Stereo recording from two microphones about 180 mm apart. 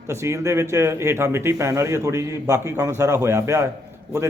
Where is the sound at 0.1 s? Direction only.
15° right (ahead or behind).